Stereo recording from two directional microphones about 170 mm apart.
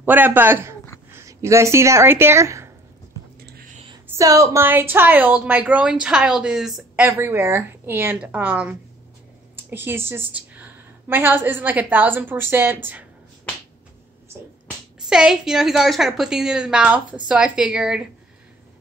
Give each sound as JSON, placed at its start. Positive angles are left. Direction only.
{"t": 0.0, "sound": "a woman's voice", "side_deg": -10}
{"t": 3.3, "sound": "a sound", "side_deg": -65}
{"t": 4.2, "sound": "a woman's voice", "side_deg": -20}
{"t": 7.1, "sound": "a woman's voice", "side_deg": -15}
{"t": 15.0, "sound": "a woman's voice", "side_deg": -5}